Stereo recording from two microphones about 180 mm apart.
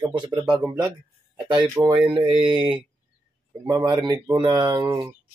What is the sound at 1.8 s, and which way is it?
Speech, 15° right (ahead or behind).